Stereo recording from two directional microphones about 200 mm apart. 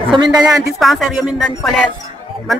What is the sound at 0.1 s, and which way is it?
Speech, 25° right (ahead or behind).